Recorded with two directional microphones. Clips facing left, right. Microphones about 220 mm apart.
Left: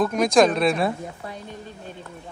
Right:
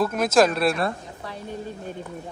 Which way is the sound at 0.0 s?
5° right (ahead or behind).